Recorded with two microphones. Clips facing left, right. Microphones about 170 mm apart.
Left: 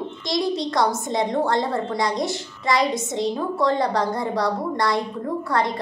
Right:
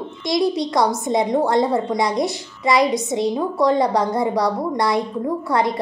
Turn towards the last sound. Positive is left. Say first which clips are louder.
# right 3 dB
turn(degrees=-20)  # may be behind; listen again after turning